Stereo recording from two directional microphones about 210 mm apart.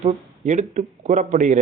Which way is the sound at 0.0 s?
35° right (ahead or behind).